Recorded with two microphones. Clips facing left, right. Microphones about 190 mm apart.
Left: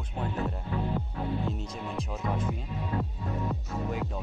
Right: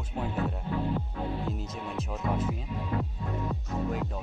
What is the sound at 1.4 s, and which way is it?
A man's voice, 5° right (ahead or behind).